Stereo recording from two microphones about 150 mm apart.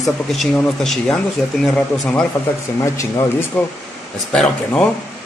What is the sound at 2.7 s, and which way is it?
Speech, 20° left (ahead or behind).